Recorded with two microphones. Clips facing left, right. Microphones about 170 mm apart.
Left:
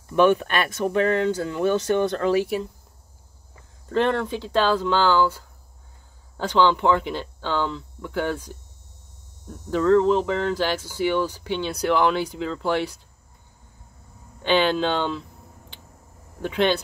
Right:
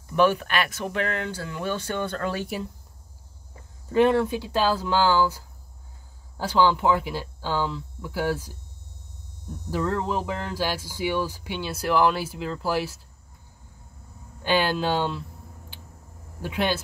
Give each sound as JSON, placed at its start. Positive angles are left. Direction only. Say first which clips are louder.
{"t": 0.1, "sound": "speech", "louder": "left 3 dB", "side_deg": 20}
{"t": 2.4, "sound": "speech", "louder": "left 5 dB", "side_deg": 0}
{"t": 3.9, "sound": "speech", "louder": "right 2 dB", "side_deg": -10}
{"t": 9.7, "sound": "speech", "louder": "left 9 dB", "side_deg": -5}
{"t": 14.4, "sound": "speech", "louder": "left 3 dB", "side_deg": -5}
{"t": 16.3, "sound": "speech", "louder": "left 4 dB", "side_deg": -5}